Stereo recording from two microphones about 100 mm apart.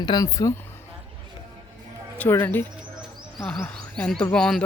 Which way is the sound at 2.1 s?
20° left (ahead or behind).